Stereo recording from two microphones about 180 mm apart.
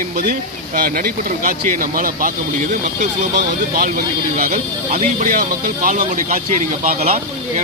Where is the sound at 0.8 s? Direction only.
50° right (ahead or behind).